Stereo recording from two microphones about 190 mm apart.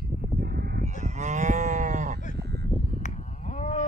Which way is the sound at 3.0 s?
40° left (ahead or behind).